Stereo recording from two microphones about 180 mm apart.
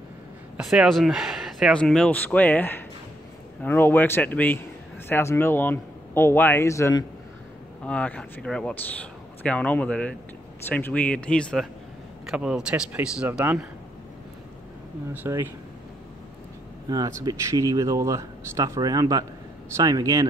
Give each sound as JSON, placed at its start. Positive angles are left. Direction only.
{"t": 0.6, "sound": "speech", "side_deg": 0}
{"t": 7.8, "sound": "speech", "side_deg": 5}
{"t": 12.3, "sound": "speech", "side_deg": -5}
{"t": 15.1, "sound": "speech", "side_deg": -15}
{"t": 16.9, "sound": "speech", "side_deg": -20}